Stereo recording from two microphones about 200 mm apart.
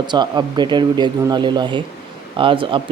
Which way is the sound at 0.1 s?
20° right (ahead or behind).